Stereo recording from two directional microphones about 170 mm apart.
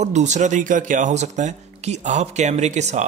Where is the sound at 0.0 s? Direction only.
45° right (ahead or behind).